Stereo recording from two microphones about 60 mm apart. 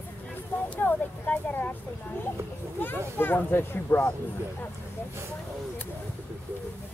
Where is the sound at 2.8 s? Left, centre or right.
Left.